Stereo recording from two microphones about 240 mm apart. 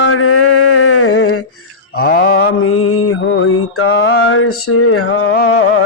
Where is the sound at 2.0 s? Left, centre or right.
Left.